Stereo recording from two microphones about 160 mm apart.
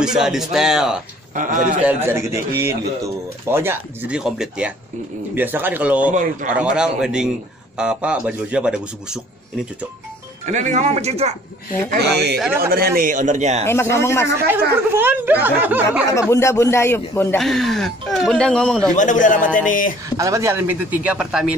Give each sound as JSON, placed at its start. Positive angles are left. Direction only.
{"t": 0.0, "sound": "speech", "side_deg": -5}
{"t": 1.3, "sound": "speech", "side_deg": -55}
{"t": 1.9, "sound": "a man's voice", "side_deg": -15}
{"t": 10.4, "sound": "speech", "side_deg": -50}
{"t": 11.9, "sound": "speech", "side_deg": -90}
{"t": 12.5, "sound": "a man's voice", "side_deg": -70}
{"t": 13.9, "sound": "a man's voice", "side_deg": 15}
{"t": 14.5, "sound": "a man's voice", "side_deg": -15}
{"t": 16.1, "sound": "a man's voice", "side_deg": 20}
{"t": 17.4, "sound": "speech", "side_deg": 0}
{"t": 18.9, "sound": "speech", "side_deg": 55}
{"t": 20.2, "sound": "a man's voice", "side_deg": -20}